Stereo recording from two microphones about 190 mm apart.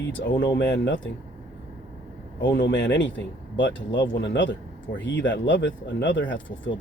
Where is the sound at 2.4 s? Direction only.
75° left (ahead or behind).